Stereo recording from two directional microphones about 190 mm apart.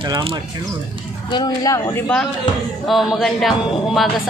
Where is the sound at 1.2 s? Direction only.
20° left (ahead or behind).